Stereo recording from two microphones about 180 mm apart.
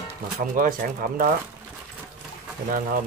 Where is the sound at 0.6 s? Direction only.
50° right (ahead or behind).